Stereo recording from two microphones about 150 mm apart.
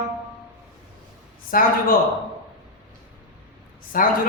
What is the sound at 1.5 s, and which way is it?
Speech, 65° left (ahead or behind).